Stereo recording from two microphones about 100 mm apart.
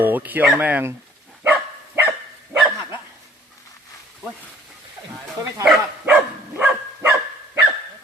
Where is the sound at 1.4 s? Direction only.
20° right (ahead or behind).